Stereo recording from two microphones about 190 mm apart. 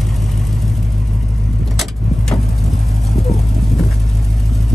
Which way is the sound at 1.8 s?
Centre (ahead or behind).